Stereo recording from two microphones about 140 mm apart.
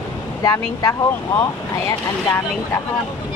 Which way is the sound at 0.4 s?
25° left (ahead or behind).